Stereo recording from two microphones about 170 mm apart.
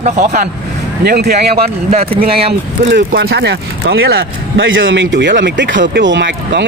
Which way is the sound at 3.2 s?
80° right.